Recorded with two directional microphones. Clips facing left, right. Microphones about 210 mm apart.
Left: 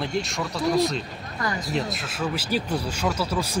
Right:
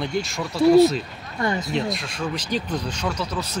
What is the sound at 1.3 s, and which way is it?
Speech, 25° right (ahead or behind).